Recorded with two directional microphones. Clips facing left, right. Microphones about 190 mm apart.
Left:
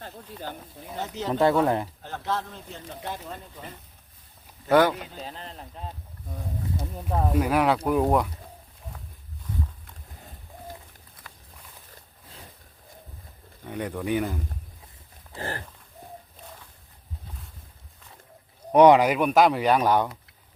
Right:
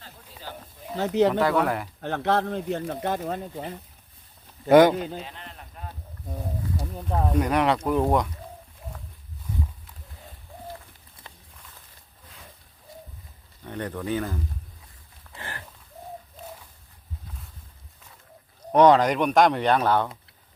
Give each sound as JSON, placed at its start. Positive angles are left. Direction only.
{"t": 0.9, "sound": "speech", "side_deg": -65}
{"t": 1.3, "sound": "speech", "side_deg": 25}
{"t": 2.0, "sound": "speech", "side_deg": -65}
{"t": 4.7, "sound": "speech", "side_deg": -20}
{"t": 5.2, "sound": "speech", "side_deg": 35}
{"t": 6.9, "sound": "speech", "side_deg": 0}
{"t": 11.2, "sound": "walk", "side_deg": -25}
{"t": 13.7, "sound": "speech", "side_deg": 10}
{"t": 15.4, "sound": "a sound", "side_deg": 35}
{"t": 18.7, "sound": "speech", "side_deg": 10}